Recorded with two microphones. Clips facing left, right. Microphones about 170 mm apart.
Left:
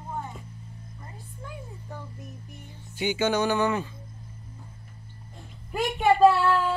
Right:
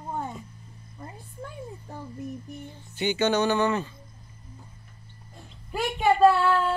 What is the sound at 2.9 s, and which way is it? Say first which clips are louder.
Speech: right 1 dB; 10° left (ahead or behind).